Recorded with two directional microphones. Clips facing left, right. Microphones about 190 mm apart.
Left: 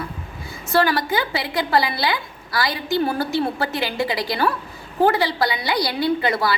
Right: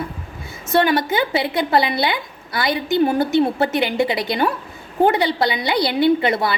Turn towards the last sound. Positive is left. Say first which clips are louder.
# right 4 dB
turn(degrees=-25)  # may be behind; listen again after turning